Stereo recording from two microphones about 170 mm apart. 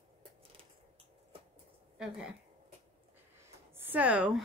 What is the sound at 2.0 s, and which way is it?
Speech, 5° right (ahead or behind).